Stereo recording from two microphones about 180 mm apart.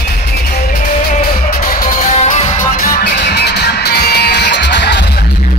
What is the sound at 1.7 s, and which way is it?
Music, 45° left (ahead or behind).